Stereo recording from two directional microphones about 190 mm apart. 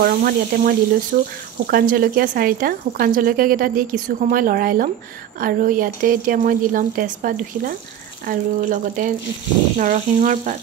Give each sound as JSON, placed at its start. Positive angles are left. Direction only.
{"t": 0.0, "sound": "speech", "side_deg": -50}